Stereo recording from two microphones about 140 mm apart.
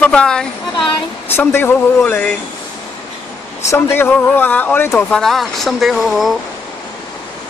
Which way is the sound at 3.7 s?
20° left (ahead or behind).